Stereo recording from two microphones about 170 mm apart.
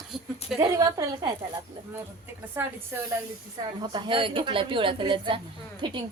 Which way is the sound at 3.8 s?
25° right (ahead or behind).